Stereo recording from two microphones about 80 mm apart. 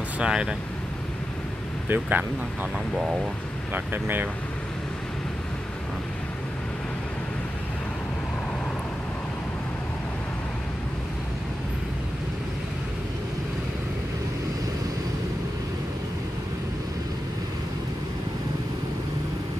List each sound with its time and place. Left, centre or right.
0.2 s speech: centre
1.9 s speech: right
3.7 s speech: right